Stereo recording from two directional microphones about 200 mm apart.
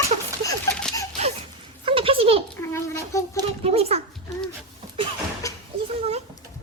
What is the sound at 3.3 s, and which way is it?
Speech, 30° right (ahead or behind).